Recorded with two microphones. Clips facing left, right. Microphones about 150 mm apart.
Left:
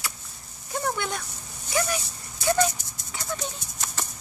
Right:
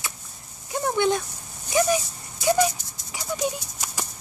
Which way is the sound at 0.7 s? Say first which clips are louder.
Right 6 dB; 20° right (ahead or behind).